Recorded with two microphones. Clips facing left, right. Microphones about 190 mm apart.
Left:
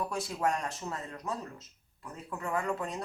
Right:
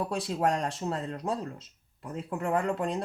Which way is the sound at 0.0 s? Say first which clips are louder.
Right 4 dB; 30° right (ahead or behind).